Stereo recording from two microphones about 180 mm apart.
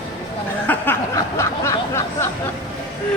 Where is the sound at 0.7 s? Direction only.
15° left (ahead or behind).